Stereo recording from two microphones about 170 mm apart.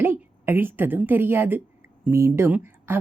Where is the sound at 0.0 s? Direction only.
15° right (ahead or behind).